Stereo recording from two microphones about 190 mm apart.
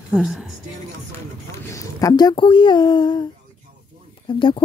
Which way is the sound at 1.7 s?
15° left (ahead or behind).